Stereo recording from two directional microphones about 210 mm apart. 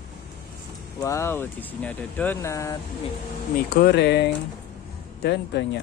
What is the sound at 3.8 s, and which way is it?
Speech, 50° left (ahead or behind).